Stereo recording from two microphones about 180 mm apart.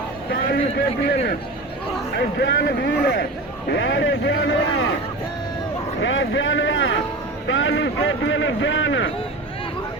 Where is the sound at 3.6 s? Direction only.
80° left.